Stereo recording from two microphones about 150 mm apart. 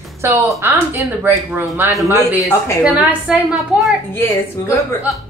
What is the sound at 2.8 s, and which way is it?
A woman's voice, centre (ahead or behind).